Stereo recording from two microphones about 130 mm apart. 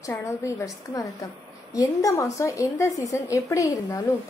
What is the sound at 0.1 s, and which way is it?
A woman's voice, 20° left (ahead or behind).